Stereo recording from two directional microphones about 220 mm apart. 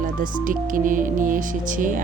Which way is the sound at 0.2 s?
40° right (ahead or behind).